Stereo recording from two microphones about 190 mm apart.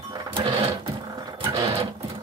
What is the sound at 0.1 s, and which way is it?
Sewing machine, 20° right (ahead or behind).